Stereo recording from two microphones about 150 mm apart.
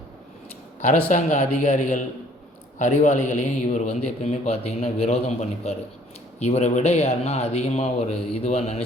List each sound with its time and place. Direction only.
0.8 s a man's voice: 55° left (ahead or behind)